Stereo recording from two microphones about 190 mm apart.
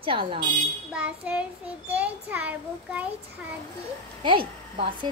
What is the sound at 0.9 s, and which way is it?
Child singing, 5° right (ahead or behind).